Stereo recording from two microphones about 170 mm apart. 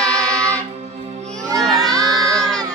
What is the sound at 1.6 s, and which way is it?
Crowd, centre (ahead or behind).